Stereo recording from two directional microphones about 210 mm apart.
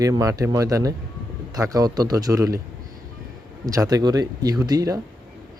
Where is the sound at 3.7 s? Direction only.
15° right (ahead or behind).